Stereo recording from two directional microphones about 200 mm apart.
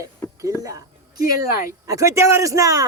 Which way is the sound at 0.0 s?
15° right (ahead or behind).